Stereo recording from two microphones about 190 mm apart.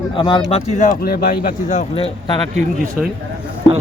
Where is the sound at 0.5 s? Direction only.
45° left (ahead or behind).